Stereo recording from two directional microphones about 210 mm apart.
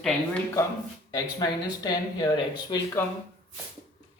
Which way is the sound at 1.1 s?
20° left (ahead or behind).